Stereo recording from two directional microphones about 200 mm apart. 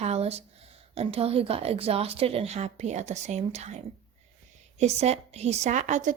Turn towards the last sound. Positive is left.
turn(degrees=-35)  # may be behind; listen again after turning